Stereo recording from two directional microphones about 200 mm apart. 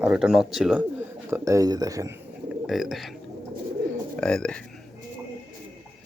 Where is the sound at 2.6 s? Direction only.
Centre (ahead or behind).